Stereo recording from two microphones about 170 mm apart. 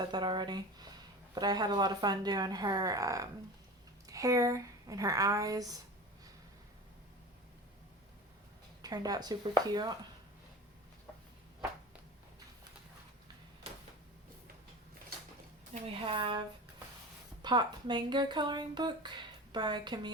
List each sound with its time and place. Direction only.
0.1 s speech: 25° right (ahead or behind)
8.8 s speech: 20° right (ahead or behind)
15.7 s a woman's voice: 35° right (ahead or behind)
17.4 s speech: 25° right (ahead or behind)